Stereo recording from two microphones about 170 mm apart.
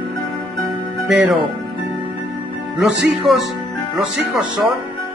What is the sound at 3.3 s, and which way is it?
Speech, centre (ahead or behind).